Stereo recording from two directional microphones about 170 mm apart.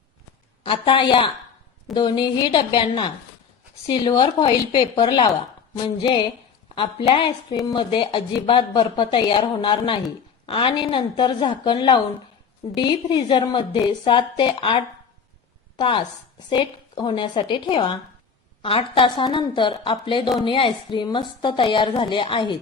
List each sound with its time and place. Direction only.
0.6 s a woman's voice: 30° left (ahead or behind)
15.8 s a woman's voice: 30° left (ahead or behind)